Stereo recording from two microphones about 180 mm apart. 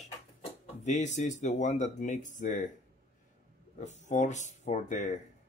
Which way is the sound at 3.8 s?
40° left (ahead or behind).